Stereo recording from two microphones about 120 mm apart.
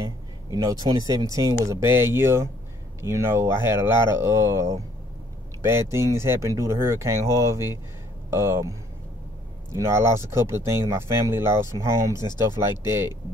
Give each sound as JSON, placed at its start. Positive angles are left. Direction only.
{"t": 0.0, "sound": "speech", "side_deg": -30}